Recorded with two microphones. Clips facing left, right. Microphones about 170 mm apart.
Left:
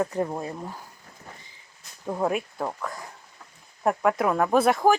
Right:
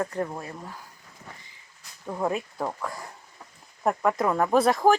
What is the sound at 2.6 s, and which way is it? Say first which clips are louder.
Speech: even; 5° right (ahead or behind).